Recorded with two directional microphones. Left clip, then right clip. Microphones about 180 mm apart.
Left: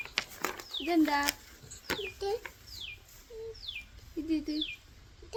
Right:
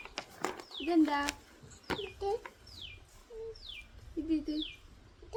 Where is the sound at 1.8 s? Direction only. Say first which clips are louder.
Left 1 dB; centre (ahead or behind).